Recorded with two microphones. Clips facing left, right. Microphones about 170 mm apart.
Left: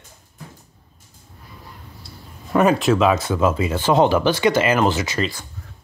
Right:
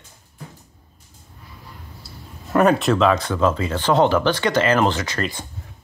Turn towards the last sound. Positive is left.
turn(degrees=10)  # may be behind; listen again after turning